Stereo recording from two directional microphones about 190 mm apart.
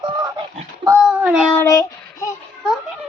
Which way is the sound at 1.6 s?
15° left (ahead or behind).